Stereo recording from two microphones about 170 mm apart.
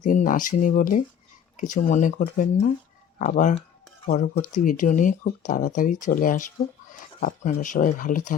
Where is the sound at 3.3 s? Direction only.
50° left (ahead or behind).